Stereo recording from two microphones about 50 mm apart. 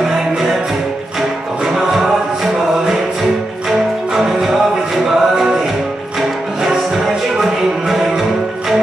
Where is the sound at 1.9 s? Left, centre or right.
Centre.